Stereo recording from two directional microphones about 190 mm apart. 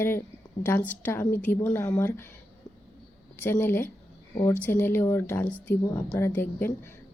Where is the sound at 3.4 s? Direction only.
10° left (ahead or behind).